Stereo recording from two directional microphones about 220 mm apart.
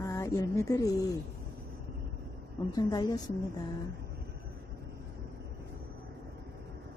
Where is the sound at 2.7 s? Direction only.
20° left (ahead or behind).